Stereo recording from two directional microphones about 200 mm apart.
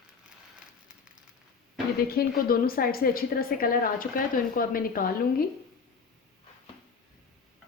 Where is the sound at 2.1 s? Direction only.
50° left (ahead or behind).